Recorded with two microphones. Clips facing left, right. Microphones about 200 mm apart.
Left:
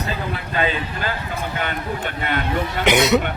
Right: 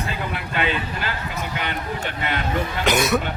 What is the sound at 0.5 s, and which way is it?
Speech, 40° left (ahead or behind).